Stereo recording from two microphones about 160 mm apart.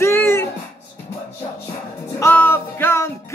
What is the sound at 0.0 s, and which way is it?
Music, 15° left (ahead or behind).